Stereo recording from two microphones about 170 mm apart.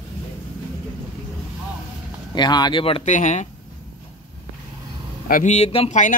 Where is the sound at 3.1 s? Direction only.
45° left (ahead or behind).